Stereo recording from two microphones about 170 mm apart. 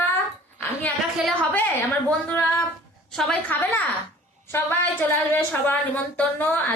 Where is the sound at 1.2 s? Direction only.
10° left (ahead or behind).